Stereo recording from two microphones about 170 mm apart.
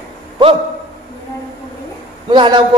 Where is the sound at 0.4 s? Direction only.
25° right (ahead or behind).